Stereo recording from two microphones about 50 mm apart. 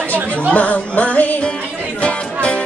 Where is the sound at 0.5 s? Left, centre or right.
Left.